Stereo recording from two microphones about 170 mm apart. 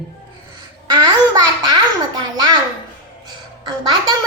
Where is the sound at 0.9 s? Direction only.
25° right (ahead or behind).